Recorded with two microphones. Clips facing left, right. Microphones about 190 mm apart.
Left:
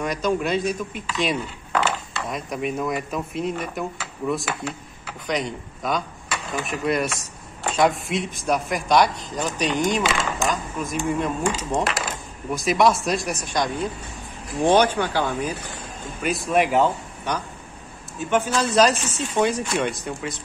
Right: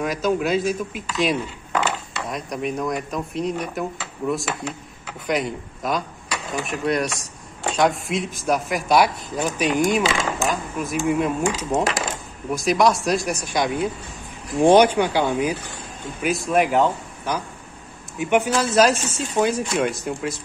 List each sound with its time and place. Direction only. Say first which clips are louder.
0.0 s speech: right 2 dB; centre (ahead or behind)
16.2 s speech: right 1 dB; centre (ahead or behind)
18.2 s speech: right 2 dB; 15° right (ahead or behind)
18.8 s speech: right 1 dB; centre (ahead or behind)